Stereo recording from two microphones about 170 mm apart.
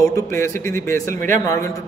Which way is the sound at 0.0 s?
15° left (ahead or behind).